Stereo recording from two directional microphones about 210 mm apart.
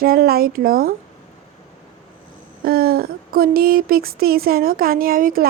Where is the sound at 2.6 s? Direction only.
45° right (ahead or behind).